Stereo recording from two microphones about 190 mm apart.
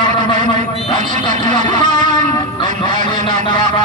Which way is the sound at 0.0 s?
40° right (ahead or behind).